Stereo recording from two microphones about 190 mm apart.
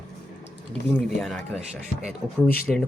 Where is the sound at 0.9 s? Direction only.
Centre (ahead or behind).